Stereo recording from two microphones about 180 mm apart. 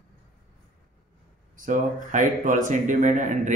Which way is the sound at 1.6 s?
45° right (ahead or behind).